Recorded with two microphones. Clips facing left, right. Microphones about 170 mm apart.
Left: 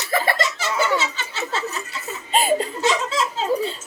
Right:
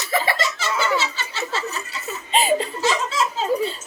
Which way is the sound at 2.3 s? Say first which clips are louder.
Even; 45° left (ahead or behind).